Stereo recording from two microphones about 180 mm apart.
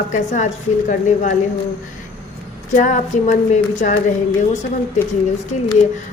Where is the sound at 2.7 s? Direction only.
40° left (ahead or behind).